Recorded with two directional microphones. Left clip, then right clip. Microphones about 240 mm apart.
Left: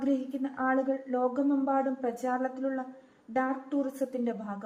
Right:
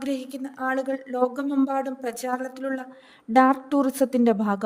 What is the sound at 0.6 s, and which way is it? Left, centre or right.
A woman's voice, right.